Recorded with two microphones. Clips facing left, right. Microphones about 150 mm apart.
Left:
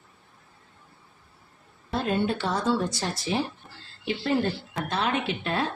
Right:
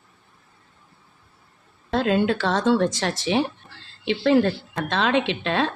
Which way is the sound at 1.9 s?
90° right.